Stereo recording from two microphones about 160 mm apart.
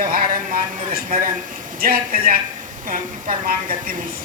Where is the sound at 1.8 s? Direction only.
65° right (ahead or behind).